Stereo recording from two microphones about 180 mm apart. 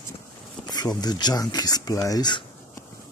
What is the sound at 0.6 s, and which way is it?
Speech, 20° left (ahead or behind).